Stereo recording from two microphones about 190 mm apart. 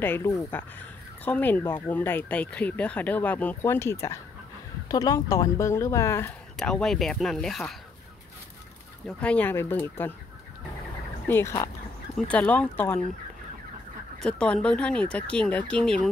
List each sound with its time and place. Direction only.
0.0 s speech: 10° left (ahead or behind)
6.5 s speech: 5° left (ahead or behind)
9.0 s speech: 5° left (ahead or behind)
11.2 s speech: 15° left (ahead or behind)
14.2 s speech: 5° left (ahead or behind)